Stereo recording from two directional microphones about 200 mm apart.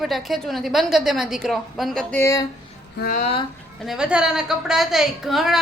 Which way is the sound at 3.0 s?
45° left (ahead or behind).